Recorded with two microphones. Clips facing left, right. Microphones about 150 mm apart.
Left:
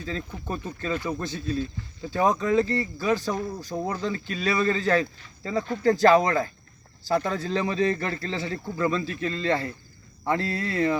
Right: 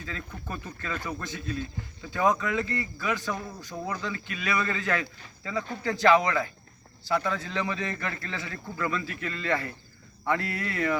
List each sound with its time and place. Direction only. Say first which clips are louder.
0.0 s speech: left 6 dB; 30° left (ahead or behind)